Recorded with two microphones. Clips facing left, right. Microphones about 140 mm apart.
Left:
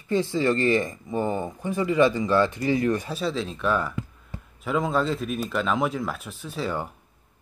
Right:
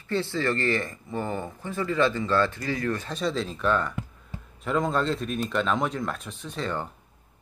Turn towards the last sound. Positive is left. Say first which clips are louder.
# left 2 dB
turn(degrees=5)  # may be behind; listen again after turning